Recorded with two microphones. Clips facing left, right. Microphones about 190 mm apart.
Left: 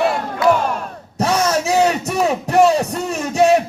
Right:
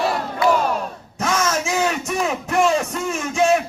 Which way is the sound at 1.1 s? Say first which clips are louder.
Left 4 dB; 35° left (ahead or behind).